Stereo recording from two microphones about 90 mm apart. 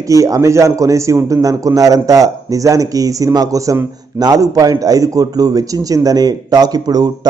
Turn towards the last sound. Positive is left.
turn(degrees=-45)  # may be behind; listen again after turning